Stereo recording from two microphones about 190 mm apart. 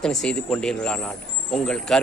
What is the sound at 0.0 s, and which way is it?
A man's voice, 5° left (ahead or behind).